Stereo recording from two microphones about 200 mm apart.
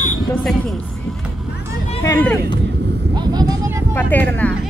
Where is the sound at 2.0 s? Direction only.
15° left (ahead or behind).